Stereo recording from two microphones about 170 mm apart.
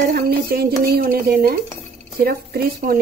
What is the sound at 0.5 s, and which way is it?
Speech, 65° right (ahead or behind).